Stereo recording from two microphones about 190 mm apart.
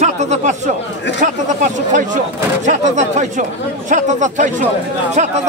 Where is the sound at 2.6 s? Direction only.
40° right (ahead or behind).